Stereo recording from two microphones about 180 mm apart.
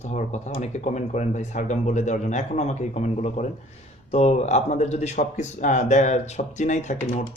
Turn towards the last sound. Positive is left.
turn(degrees=40)  # may be behind; listen again after turning